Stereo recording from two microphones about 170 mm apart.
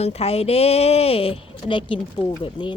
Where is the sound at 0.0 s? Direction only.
35° left (ahead or behind).